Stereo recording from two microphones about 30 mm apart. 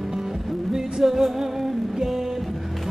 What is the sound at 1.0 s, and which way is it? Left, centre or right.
Music, centre.